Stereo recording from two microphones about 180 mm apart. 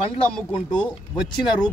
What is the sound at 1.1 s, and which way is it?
Speech, 10° left (ahead or behind).